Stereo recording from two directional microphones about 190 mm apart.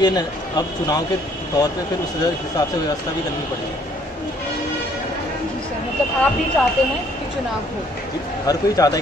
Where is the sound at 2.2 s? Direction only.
20° left (ahead or behind).